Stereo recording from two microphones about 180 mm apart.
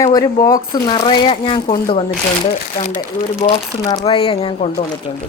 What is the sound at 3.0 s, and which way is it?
Speech, 20° left (ahead or behind).